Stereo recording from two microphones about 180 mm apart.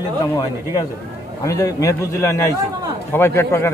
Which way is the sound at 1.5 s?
15° left (ahead or behind).